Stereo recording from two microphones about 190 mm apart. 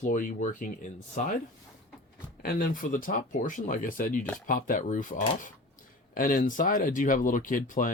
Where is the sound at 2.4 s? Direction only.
45° left (ahead or behind).